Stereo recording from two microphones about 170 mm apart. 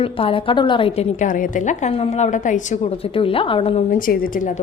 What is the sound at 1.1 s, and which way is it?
A woman's voice, 50° left (ahead or behind).